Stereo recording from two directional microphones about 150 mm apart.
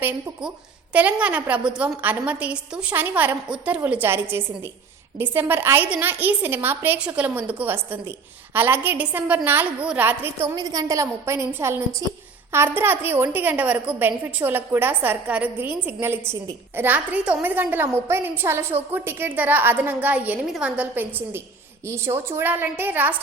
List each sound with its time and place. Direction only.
0.9 s a woman's voice: 10° right (ahead or behind)
10.5 s a woman's voice: 25° right (ahead or behind)